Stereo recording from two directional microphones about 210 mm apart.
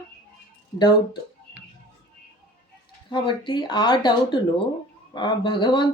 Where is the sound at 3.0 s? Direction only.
25° left (ahead or behind).